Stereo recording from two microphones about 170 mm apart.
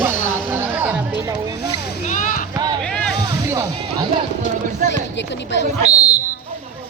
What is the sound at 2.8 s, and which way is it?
Speech, 5° left (ahead or behind).